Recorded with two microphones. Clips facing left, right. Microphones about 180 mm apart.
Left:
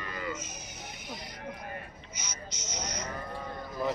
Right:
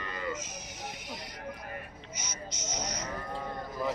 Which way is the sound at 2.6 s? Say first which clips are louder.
Right 1 dB; 45° right (ahead or behind).